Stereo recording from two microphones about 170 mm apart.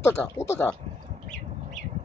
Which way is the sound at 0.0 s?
15° left (ahead or behind).